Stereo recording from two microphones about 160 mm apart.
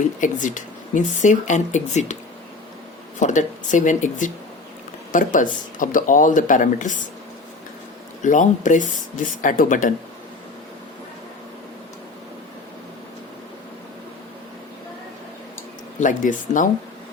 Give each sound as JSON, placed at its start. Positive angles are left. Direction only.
{"t": 0.2, "sound": "speech", "side_deg": 50}
{"t": 3.2, "sound": "speech", "side_deg": 50}
{"t": 8.2, "sound": "speech", "side_deg": 50}
{"t": 16.0, "sound": "speech", "side_deg": 55}